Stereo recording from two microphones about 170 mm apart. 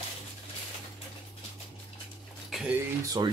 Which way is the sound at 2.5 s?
5° right (ahead or behind).